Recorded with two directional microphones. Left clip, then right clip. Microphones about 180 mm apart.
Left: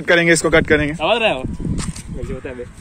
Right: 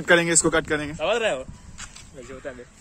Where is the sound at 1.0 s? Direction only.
30° right (ahead or behind).